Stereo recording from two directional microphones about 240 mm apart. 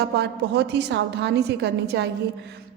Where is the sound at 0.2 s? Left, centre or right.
Right.